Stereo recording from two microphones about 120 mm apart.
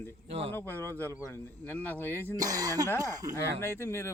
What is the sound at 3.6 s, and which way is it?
Speech, 20° left (ahead or behind).